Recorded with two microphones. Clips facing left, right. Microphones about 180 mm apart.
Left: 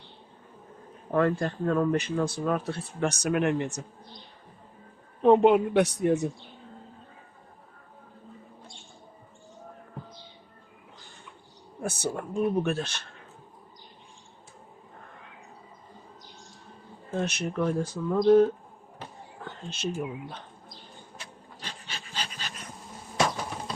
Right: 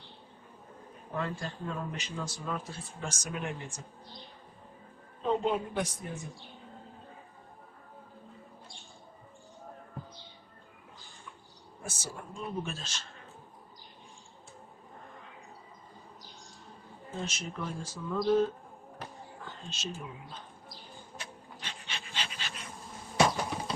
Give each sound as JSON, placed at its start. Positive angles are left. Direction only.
{"t": 1.1, "sound": "speech", "side_deg": 60}
{"t": 5.2, "sound": "a woman's voice", "side_deg": 70}
{"t": 11.8, "sound": "speech", "side_deg": 60}
{"t": 17.2, "sound": "speech", "side_deg": 65}
{"t": 19.7, "sound": "speech", "side_deg": 60}
{"t": 21.6, "sound": "dog", "side_deg": 35}
{"t": 23.1, "sound": "a sound", "side_deg": 0}